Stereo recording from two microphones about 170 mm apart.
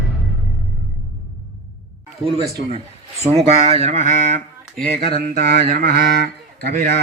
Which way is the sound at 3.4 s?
40° right (ahead or behind).